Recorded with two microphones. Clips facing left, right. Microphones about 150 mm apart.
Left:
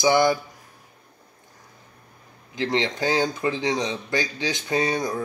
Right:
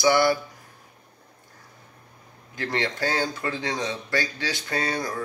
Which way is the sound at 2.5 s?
20° left (ahead or behind).